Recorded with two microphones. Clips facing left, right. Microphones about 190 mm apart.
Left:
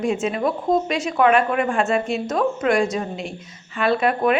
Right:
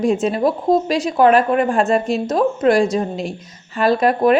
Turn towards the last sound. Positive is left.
turn(degrees=-40)  # may be behind; listen again after turning